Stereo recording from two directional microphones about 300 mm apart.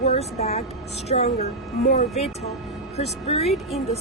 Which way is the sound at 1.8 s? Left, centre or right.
Left.